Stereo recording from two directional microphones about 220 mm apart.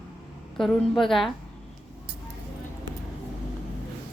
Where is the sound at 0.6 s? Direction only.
Centre (ahead or behind).